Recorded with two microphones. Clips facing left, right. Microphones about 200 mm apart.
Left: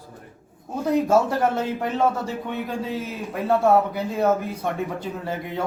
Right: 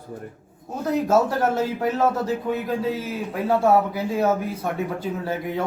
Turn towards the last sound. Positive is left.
turn(degrees=-5)  # may be behind; listen again after turning